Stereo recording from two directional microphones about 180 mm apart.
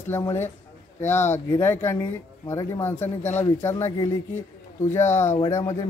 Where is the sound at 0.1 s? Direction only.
15° left (ahead or behind).